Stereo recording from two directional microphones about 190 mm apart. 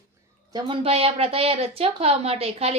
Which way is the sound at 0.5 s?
30° right (ahead or behind).